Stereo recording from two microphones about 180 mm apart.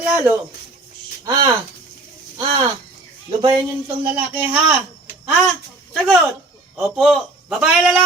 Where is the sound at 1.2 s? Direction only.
20° right (ahead or behind).